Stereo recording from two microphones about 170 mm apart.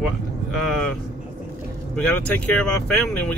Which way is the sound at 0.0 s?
Centre (ahead or behind).